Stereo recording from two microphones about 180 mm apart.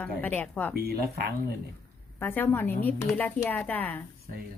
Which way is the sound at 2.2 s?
10° left (ahead or behind).